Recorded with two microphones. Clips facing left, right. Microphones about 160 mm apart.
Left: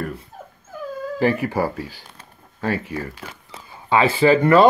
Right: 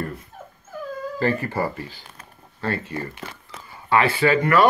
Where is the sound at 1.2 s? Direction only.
15° left (ahead or behind).